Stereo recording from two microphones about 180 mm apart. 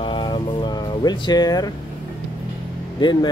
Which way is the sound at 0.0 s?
25° left (ahead or behind).